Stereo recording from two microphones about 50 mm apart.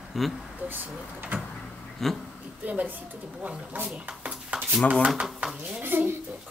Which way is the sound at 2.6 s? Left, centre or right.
Right.